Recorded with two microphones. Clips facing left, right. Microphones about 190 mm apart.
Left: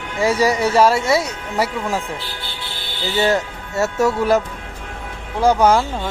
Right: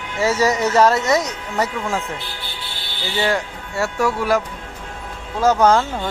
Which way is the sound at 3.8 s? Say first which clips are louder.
Left 3 dB; 20° left (ahead or behind).